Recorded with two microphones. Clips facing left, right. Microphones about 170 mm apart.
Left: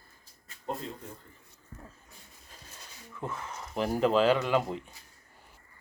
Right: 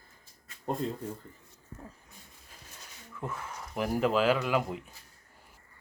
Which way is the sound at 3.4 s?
5° right (ahead or behind).